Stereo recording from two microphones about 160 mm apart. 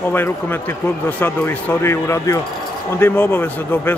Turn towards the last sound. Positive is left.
turn(degrees=15)  # may be behind; listen again after turning